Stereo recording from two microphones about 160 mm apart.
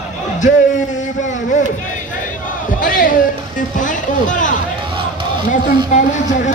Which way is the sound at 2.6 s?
55° left (ahead or behind).